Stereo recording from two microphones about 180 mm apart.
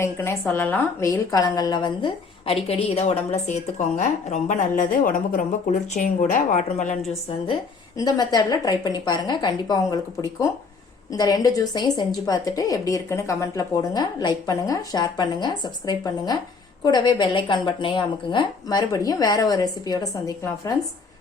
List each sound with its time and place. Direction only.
0.0 s a woman's voice: 15° left (ahead or behind)
2.5 s a woman's voice: 35° left (ahead or behind)
7.9 s a woman's voice: 20° left (ahead or behind)